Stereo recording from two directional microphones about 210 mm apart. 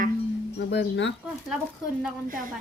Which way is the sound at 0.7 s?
55° left (ahead or behind).